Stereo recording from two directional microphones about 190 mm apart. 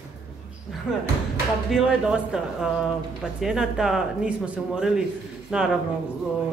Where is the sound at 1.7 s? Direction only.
5° right (ahead or behind).